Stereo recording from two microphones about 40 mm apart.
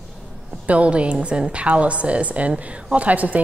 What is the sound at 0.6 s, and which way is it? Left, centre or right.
A woman's voice, right.